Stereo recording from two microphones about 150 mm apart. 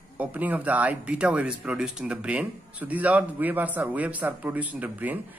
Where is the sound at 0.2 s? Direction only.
10° right (ahead or behind).